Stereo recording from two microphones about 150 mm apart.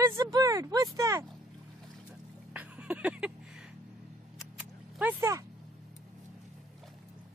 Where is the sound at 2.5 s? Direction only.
10° right (ahead or behind).